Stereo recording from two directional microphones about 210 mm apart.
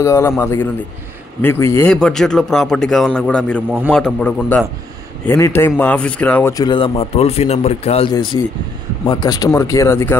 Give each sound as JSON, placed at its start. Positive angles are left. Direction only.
{"t": 0.0, "sound": "speech", "side_deg": 15}